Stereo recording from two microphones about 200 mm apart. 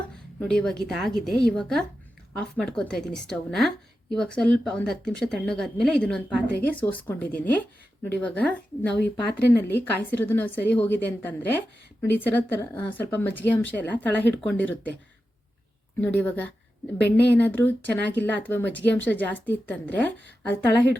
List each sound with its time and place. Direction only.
0.3 s speech: 5° left (ahead or behind)
16.0 s speech: 10° left (ahead or behind)